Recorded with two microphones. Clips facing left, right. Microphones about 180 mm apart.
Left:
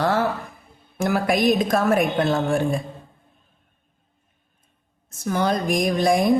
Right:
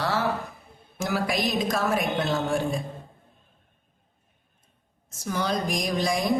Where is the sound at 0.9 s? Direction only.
55° left (ahead or behind).